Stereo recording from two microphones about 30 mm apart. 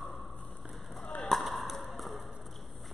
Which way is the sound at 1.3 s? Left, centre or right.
Centre.